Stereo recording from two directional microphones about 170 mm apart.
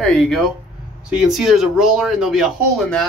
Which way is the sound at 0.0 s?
5° left (ahead or behind).